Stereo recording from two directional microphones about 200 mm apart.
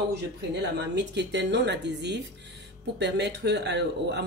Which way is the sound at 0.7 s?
60° right (ahead or behind).